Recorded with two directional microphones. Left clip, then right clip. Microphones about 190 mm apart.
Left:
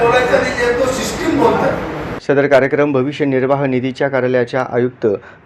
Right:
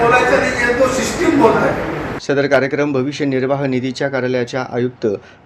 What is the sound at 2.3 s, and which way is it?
Speech, 5° right (ahead or behind).